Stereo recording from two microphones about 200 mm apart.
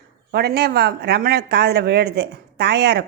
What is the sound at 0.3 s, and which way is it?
A woman's voice, 55° right (ahead or behind).